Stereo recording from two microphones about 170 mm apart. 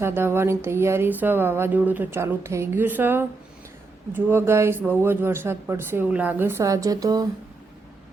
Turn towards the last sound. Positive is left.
turn(degrees=-20)  # may be behind; listen again after turning